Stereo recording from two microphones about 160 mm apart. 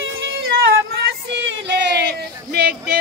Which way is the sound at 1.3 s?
90° right.